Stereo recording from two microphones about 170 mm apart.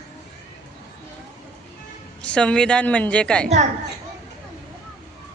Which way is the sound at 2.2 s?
5° left (ahead or behind).